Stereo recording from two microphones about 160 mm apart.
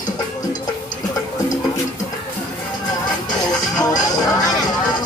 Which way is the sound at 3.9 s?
25° left (ahead or behind).